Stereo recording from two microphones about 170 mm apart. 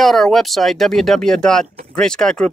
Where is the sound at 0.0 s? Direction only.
Centre (ahead or behind).